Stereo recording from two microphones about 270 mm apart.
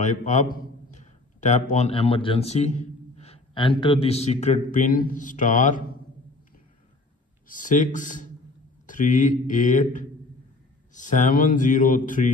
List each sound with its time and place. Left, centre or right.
0.0 s a man's voice: left
7.4 s speech: left